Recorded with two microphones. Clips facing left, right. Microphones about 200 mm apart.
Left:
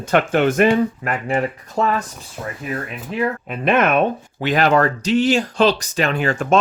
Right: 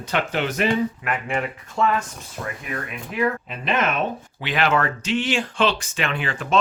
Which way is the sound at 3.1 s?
30° left (ahead or behind).